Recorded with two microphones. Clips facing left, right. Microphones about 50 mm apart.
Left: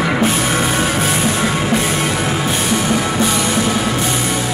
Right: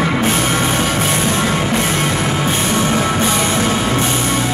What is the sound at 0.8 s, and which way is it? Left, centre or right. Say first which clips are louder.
Music: even; left.